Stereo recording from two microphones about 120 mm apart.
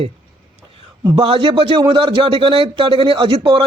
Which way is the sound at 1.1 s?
50° right (ahead or behind).